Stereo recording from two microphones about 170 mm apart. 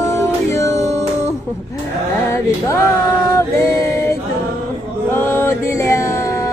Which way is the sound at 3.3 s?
15° left (ahead or behind).